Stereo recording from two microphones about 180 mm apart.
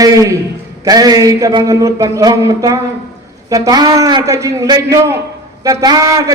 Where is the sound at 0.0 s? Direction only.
20° right (ahead or behind).